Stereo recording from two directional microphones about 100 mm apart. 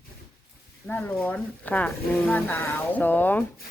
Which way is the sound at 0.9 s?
20° left (ahead or behind).